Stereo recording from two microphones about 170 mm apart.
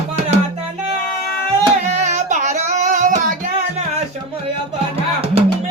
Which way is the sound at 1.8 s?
40° right (ahead or behind).